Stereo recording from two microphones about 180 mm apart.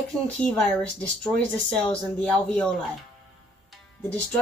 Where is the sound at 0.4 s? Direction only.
5° left (ahead or behind).